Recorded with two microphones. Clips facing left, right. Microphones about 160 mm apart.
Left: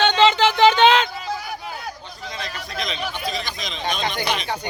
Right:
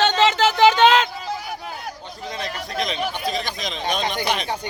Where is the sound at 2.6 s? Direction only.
45° right (ahead or behind).